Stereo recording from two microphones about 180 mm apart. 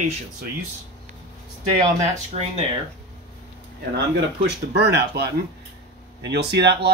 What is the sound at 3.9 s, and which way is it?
Speech, 70° right (ahead or behind).